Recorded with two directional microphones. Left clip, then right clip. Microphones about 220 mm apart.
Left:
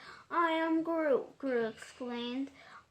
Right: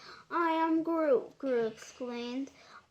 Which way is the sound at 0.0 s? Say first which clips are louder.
Even; 35° right (ahead or behind).